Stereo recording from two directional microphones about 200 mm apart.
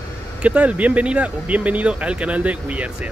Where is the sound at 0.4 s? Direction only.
5° right (ahead or behind).